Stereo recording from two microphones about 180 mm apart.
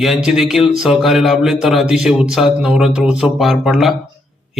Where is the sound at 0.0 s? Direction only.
Centre (ahead or behind).